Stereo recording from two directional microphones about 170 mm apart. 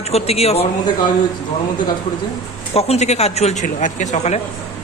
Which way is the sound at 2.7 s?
40° left (ahead or behind).